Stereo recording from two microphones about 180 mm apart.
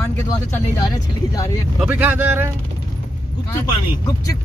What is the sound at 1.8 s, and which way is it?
Speech, 10° right (ahead or behind).